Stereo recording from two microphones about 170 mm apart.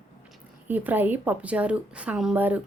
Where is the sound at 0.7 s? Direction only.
10° right (ahead or behind).